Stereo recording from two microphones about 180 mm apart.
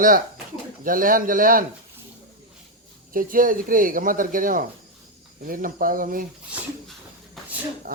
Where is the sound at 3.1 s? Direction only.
50° right (ahead or behind).